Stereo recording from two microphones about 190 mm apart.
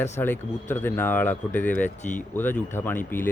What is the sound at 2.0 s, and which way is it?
Speech, 40° left (ahead or behind).